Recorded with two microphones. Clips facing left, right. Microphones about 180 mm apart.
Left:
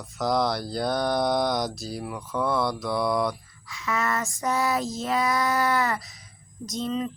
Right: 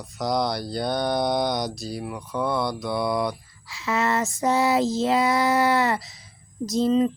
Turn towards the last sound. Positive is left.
turn(degrees=-30)  # may be behind; listen again after turning